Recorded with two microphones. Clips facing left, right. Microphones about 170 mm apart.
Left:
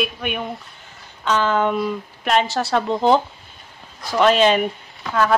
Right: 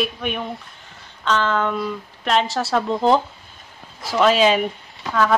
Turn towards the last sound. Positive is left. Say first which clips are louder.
# even
turn(degrees=5)  # may be behind; listen again after turning